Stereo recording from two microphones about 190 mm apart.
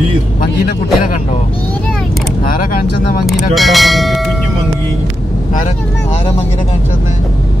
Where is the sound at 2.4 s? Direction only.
50° left (ahead or behind).